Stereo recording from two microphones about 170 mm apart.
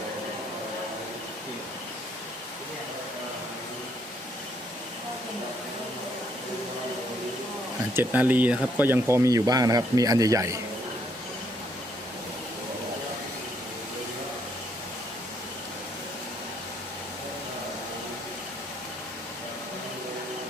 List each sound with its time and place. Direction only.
7.9 s speech: 10° right (ahead or behind)